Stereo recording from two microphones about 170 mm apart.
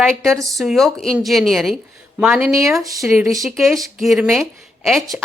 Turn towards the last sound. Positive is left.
turn(degrees=0)  # may be behind; listen again after turning